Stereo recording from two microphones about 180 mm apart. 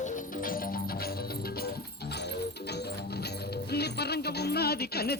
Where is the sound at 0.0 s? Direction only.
50° left (ahead or behind).